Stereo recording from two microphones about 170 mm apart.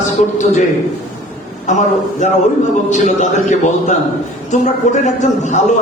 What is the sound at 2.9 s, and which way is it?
Speech, 45° left (ahead or behind).